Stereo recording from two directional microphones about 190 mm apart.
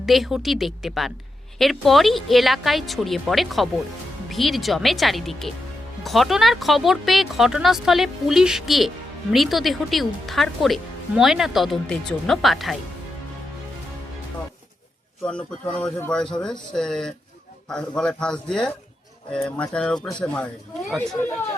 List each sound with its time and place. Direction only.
0.0 s speech: centre (ahead or behind)
15.2 s speech: 5° left (ahead or behind)